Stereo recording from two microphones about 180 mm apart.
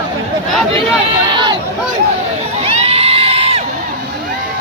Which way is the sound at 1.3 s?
25° right (ahead or behind).